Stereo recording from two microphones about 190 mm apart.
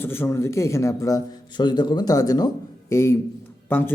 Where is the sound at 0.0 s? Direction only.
10° left (ahead or behind).